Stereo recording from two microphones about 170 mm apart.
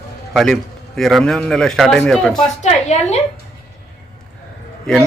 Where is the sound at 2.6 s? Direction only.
40° left (ahead or behind).